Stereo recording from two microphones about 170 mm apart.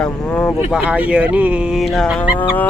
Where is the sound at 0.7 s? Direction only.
5° right (ahead or behind).